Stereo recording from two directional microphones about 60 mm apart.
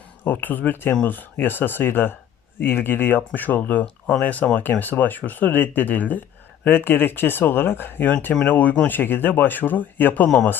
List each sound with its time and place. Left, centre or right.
0.3 s speech: left
3.8 s speech: centre
4.2 s speech: left
8.4 s speech: left
8.9 s speech: left